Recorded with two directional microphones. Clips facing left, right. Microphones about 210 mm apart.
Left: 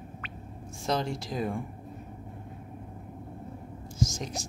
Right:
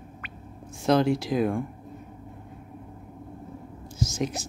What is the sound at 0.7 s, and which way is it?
Speech, centre (ahead or behind).